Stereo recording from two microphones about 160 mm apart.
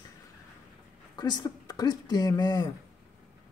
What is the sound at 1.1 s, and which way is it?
A man's voice, 25° left (ahead or behind).